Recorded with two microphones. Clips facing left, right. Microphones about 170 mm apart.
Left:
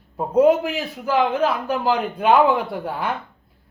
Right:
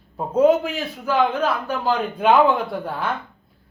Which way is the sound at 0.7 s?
5° left (ahead or behind).